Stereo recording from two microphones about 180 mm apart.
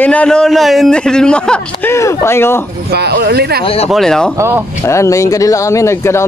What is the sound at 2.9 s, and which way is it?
Speech, 65° right (ahead or behind).